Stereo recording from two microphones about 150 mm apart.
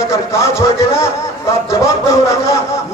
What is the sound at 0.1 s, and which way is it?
Speech, 20° left (ahead or behind).